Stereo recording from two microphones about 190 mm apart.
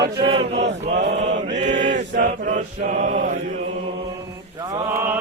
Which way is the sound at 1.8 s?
45° right (ahead or behind).